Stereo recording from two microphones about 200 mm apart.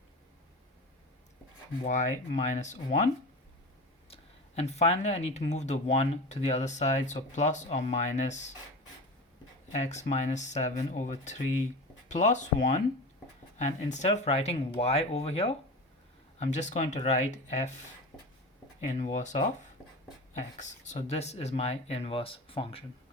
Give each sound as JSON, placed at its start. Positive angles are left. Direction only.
{"t": 1.8, "sound": "speech", "side_deg": 35}
{"t": 4.1, "sound": "speech", "side_deg": 30}
{"t": 9.7, "sound": "speech", "side_deg": 35}
{"t": 18.9, "sound": "speech", "side_deg": 35}
{"t": 20.6, "sound": "speech", "side_deg": 35}